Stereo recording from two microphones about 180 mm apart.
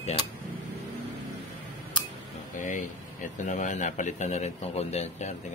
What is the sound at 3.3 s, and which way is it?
A man's voice, 40° left (ahead or behind).